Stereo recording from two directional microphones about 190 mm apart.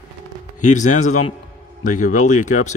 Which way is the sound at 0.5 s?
40° left (ahead or behind).